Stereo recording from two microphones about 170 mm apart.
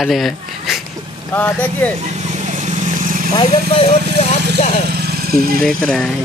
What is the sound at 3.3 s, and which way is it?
Speech, 30° left (ahead or behind).